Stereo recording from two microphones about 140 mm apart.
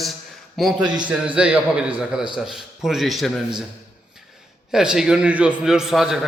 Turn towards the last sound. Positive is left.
turn(degrees=-5)  # may be behind; listen again after turning